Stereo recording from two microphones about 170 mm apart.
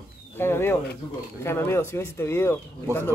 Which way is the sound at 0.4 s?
15° left (ahead or behind).